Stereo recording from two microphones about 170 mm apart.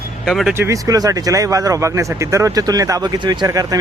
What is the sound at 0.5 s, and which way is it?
Speech, 15° right (ahead or behind).